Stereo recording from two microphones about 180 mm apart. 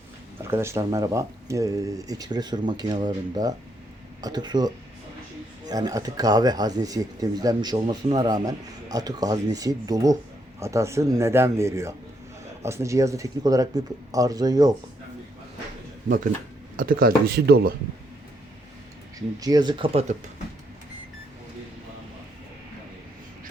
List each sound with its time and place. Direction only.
0.4 s speech: 15° right (ahead or behind)
16.0 s speech: 50° right (ahead or behind)
19.4 s speech: 20° right (ahead or behind)